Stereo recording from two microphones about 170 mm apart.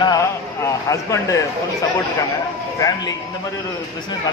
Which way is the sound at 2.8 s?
20° left (ahead or behind).